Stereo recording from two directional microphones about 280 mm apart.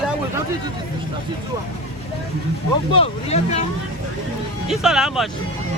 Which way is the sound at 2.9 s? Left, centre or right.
Left.